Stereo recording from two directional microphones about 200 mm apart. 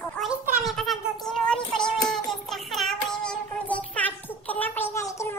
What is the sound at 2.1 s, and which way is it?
Child singing, centre (ahead or behind).